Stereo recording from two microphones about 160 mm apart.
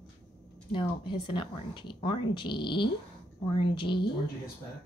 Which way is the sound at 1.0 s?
30° left (ahead or behind).